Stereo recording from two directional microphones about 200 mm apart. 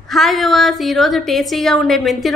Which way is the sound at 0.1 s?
Centre (ahead or behind).